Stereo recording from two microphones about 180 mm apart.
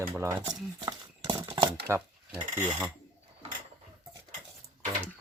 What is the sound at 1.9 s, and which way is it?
Mechanisms, 15° right (ahead or behind).